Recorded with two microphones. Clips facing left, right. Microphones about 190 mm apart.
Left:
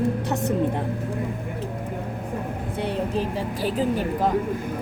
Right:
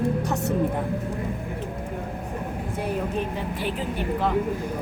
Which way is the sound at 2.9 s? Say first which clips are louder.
Left 2 dB; 35° left (ahead or behind).